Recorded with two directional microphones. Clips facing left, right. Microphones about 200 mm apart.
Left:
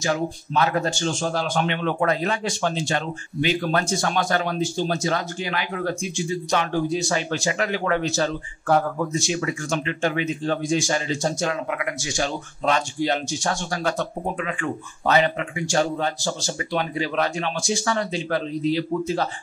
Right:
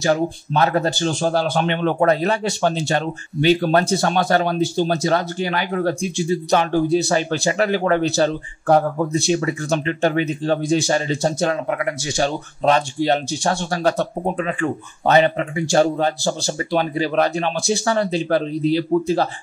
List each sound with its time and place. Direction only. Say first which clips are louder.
0.0 s speech: right 5 dB; 35° right (ahead or behind)